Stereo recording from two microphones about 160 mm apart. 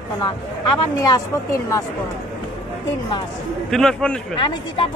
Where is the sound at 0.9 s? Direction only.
20° left (ahead or behind).